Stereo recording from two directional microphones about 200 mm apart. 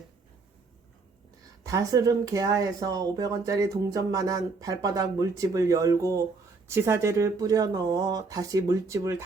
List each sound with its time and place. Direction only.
1.6 s speech: 15° right (ahead or behind)